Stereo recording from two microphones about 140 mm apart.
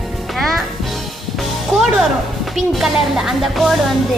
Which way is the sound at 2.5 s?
Centre (ahead or behind).